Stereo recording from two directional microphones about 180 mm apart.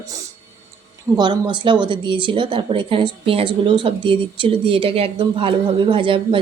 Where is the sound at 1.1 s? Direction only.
25° right (ahead or behind).